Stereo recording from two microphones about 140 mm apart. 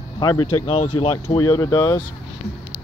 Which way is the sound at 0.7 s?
45° left (ahead or behind).